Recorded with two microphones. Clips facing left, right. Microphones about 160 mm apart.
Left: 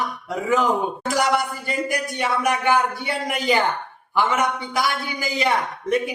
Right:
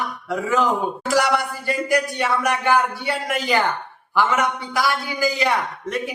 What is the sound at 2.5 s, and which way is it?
Speech, 15° left (ahead or behind).